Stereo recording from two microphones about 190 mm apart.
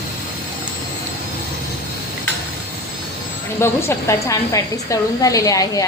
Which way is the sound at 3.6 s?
15° left (ahead or behind).